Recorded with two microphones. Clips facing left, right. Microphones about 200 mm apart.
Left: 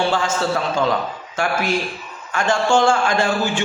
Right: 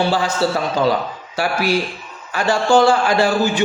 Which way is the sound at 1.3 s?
35° right (ahead or behind).